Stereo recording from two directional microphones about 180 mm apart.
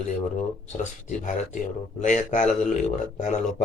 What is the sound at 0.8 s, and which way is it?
Speech, 40° left (ahead or behind).